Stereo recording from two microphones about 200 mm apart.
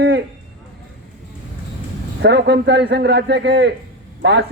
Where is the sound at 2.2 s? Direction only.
55° right (ahead or behind).